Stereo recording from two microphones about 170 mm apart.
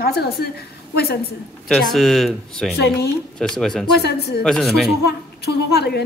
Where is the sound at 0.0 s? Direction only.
65° left (ahead or behind).